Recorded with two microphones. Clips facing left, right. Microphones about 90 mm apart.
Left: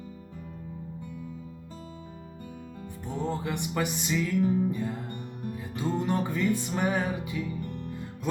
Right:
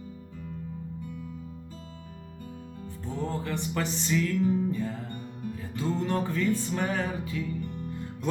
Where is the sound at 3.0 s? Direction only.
20° left (ahead or behind).